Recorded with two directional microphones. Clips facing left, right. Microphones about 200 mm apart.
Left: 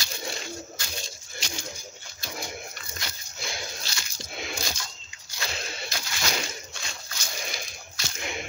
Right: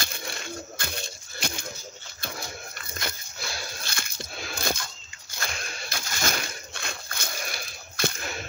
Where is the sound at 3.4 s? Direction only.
20° left (ahead or behind).